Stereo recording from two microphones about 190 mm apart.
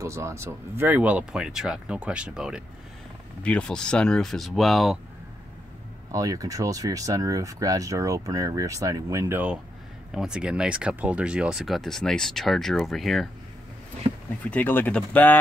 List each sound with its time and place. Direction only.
0.0 s speech: 15° right (ahead or behind)
6.1 s speech: 20° right (ahead or behind); by 13.3 s centre (ahead or behind)
14.4 s speech: 10° left (ahead or behind)